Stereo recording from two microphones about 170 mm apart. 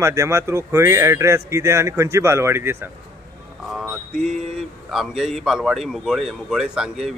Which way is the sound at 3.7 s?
5° right (ahead or behind).